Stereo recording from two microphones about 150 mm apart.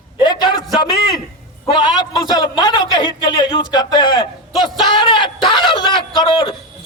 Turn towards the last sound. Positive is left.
turn(degrees=30)  # may be behind; listen again after turning